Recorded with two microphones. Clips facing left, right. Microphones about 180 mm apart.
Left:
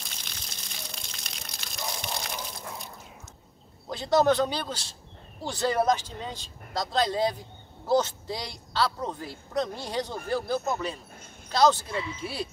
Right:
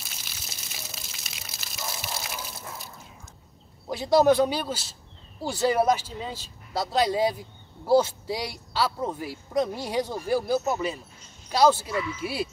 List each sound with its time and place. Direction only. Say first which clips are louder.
0.0 s a sound: even; 5° right (ahead or behind)
3.9 s speech: right 3 dB; 10° right (ahead or behind)
11.9 s speech: right 3 dB; 30° left (ahead or behind)
12.2 s speech: right 4 dB; 10° right (ahead or behind)